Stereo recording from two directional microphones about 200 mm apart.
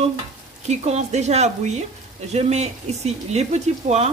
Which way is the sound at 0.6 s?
35° right (ahead or behind).